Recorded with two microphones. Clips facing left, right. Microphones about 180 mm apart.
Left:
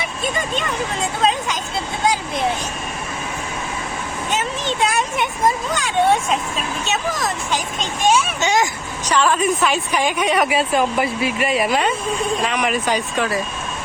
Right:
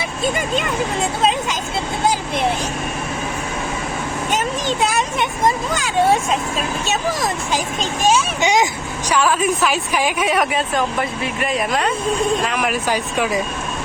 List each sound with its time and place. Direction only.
5.7 s a woman's voice: 5° right (ahead or behind)
8.4 s a woman's voice: 15° right (ahead or behind)